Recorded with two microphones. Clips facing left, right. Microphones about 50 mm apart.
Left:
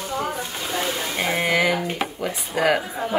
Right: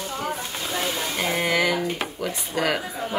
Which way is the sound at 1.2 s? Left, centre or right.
Centre.